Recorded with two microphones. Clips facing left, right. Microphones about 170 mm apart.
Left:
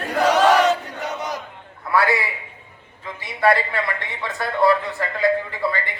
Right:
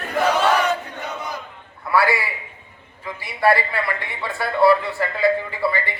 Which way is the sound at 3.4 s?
5° right (ahead or behind).